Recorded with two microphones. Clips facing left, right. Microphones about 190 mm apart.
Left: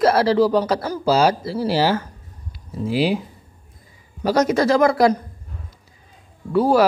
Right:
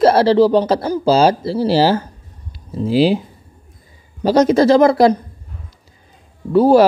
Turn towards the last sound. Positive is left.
turn(degrees=-25)  # may be behind; listen again after turning